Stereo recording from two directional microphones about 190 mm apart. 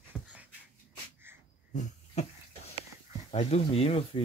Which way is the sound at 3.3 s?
35° left (ahead or behind).